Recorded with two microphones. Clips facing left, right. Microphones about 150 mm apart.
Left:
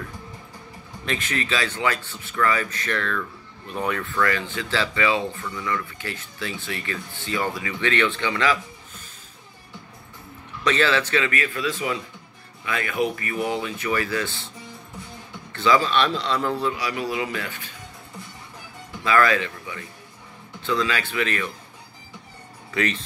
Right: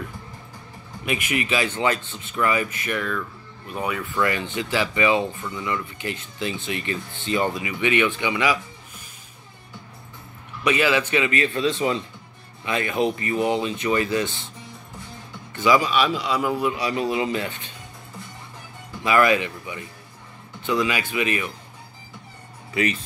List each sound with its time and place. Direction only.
1.0 s speech: 15° right (ahead or behind)
4.1 s speech: 15° right (ahead or behind)
10.6 s speech: 10° right (ahead or behind)
15.5 s speech: 15° right (ahead or behind)
16.7 s speech: 25° right (ahead or behind)
19.0 s speech: 15° right (ahead or behind)
22.8 s speech: 10° right (ahead or behind)